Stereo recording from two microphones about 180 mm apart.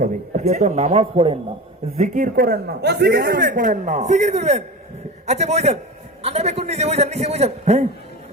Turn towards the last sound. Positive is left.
turn(degrees=-35)  # may be behind; listen again after turning